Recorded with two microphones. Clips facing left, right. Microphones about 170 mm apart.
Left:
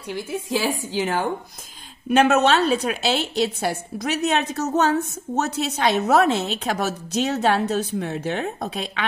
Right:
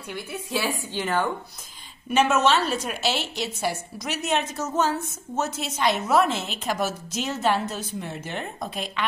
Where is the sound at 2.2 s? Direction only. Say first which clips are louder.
Left 3 dB; 60° left (ahead or behind).